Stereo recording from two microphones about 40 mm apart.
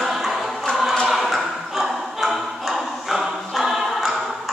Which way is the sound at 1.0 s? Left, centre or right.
Centre.